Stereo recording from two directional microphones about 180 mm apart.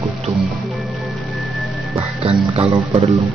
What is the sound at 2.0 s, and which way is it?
Speech, 35° right (ahead or behind).